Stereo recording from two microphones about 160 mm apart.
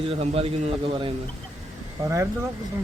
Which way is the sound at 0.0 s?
35° right (ahead or behind).